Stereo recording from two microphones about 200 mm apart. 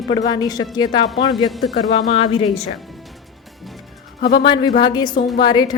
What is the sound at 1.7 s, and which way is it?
Speech, 30° left (ahead or behind).